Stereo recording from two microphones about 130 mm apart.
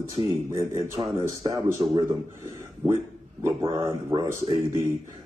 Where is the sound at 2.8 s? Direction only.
10° right (ahead or behind).